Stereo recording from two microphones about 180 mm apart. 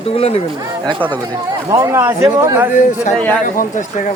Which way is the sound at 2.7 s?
40° left (ahead or behind).